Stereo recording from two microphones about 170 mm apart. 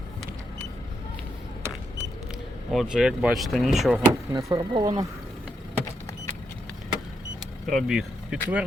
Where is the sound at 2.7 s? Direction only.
5° right (ahead or behind).